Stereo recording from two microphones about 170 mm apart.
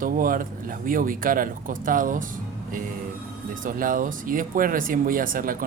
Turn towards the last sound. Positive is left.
turn(degrees=-55)  # may be behind; listen again after turning